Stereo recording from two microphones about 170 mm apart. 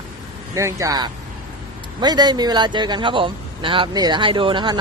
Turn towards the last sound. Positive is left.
turn(degrees=-30)  # may be behind; listen again after turning